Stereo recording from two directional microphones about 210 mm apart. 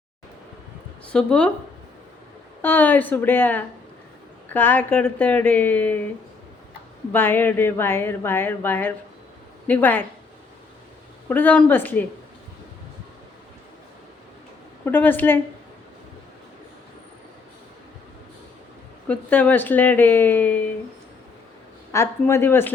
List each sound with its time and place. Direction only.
1.1 s speech: 5° left (ahead or behind)
2.6 s speech: 10° left (ahead or behind)
7.1 s speech: 10° left (ahead or behind)
11.3 s speech: 10° left (ahead or behind)
14.8 s speech: 10° left (ahead or behind)
19.0 s speech: 5° left (ahead or behind)
21.9 s speech: 10° left (ahead or behind)